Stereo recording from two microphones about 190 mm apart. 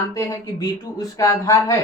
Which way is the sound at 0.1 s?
15° left (ahead or behind).